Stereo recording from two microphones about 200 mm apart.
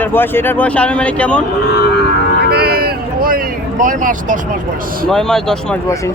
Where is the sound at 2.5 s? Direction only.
50° right (ahead or behind).